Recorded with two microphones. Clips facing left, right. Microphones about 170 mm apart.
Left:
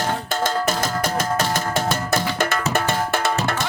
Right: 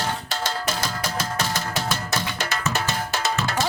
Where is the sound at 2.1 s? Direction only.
55° left (ahead or behind).